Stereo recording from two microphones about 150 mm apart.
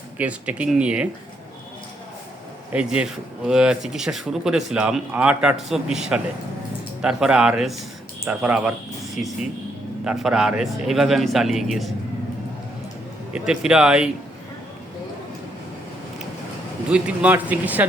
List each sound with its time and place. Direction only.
0.2 s speech: 10° right (ahead or behind)
2.7 s speech: 5° right (ahead or behind)
13.3 s speech: 5° right (ahead or behind)
16.9 s speech: 10° right (ahead or behind)